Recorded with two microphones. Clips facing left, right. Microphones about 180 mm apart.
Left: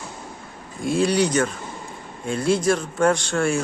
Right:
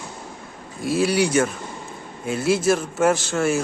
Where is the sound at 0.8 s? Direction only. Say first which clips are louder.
Even; 5° right (ahead or behind).